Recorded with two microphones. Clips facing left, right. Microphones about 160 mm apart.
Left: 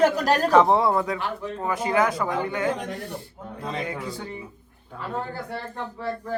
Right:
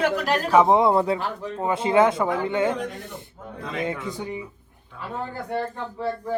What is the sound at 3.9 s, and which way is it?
Speech, 20° right (ahead or behind).